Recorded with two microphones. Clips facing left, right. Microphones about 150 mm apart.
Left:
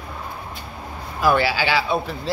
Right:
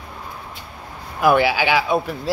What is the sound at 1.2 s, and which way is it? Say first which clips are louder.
Speech: right 3 dB; 15° right (ahead or behind).